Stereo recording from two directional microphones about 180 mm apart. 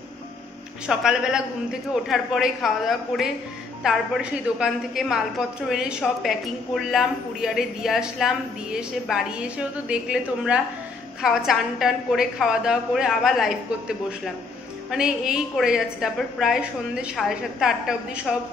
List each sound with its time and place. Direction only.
0.8 s a woman's voice: 5° right (ahead or behind)